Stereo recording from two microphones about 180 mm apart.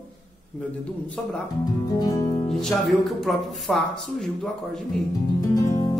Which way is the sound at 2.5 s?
Centre (ahead or behind).